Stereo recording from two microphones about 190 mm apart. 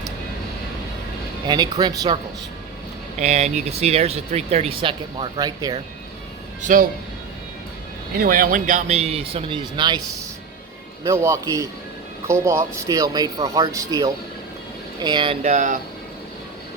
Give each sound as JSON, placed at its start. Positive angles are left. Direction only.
{"t": 1.5, "sound": "speech", "side_deg": -20}
{"t": 3.2, "sound": "speech", "side_deg": -35}
{"t": 6.6, "sound": "speech", "side_deg": -40}
{"t": 8.2, "sound": "speech", "side_deg": -50}